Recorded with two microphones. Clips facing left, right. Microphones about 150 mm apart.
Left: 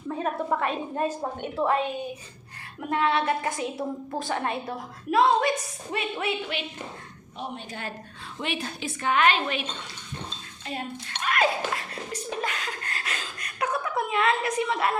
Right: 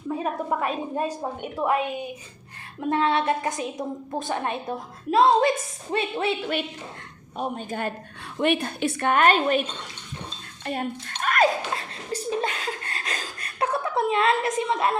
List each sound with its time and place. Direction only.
0.2 s a woman's voice: 10° right (ahead or behind)
2.9 s a woman's voice: 25° right (ahead or behind)
7.3 s a woman's voice: 45° right (ahead or behind)
10.7 s speech: 50° right (ahead or behind)
11.7 s chuckle: 30° right (ahead or behind)